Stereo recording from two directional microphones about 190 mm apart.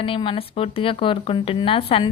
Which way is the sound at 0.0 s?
25° left (ahead or behind).